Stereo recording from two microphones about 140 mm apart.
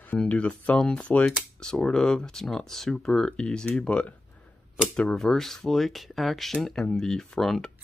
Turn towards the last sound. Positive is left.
turn(degrees=5)  # may be behind; listen again after turning